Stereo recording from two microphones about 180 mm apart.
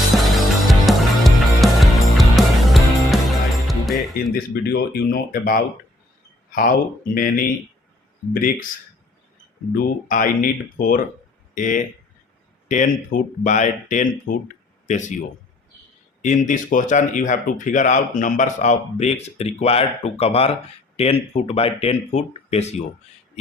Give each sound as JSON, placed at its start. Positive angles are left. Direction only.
{"t": 0.1, "sound": "music", "side_deg": 0}
{"t": 4.4, "sound": "speech", "side_deg": 55}
{"t": 9.7, "sound": "speech", "side_deg": 50}
{"t": 16.2, "sound": "speech", "side_deg": 45}